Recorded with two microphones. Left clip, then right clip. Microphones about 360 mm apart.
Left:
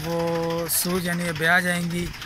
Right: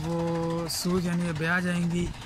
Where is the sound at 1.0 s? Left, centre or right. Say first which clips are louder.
Left 7 dB; centre.